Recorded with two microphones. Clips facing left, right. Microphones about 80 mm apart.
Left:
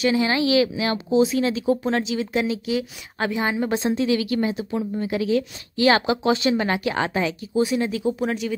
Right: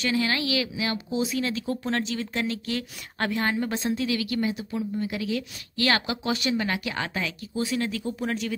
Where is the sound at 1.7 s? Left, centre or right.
Centre.